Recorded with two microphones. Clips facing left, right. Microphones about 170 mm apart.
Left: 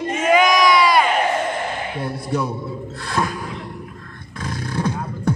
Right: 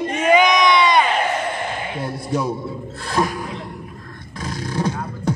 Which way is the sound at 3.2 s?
15° right (ahead or behind).